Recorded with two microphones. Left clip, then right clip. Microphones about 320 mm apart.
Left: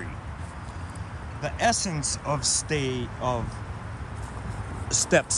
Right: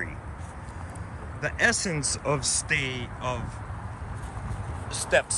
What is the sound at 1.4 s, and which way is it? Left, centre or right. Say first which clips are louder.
Speech: even; centre.